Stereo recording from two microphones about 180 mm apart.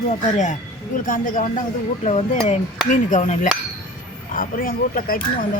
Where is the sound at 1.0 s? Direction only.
45° left (ahead or behind).